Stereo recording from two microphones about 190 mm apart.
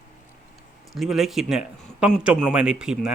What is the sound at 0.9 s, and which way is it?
A man's voice, centre (ahead or behind).